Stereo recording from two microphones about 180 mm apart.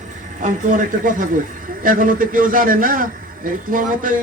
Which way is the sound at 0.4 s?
45° right (ahead or behind).